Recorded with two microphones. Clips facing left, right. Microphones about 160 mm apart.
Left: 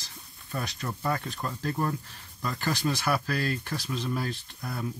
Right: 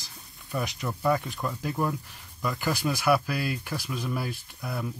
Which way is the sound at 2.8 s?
10° right (ahead or behind).